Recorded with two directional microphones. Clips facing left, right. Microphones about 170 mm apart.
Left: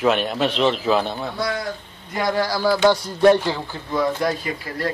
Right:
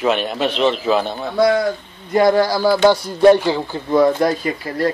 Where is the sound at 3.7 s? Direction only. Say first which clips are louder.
Right 8 dB; 25° right (ahead or behind).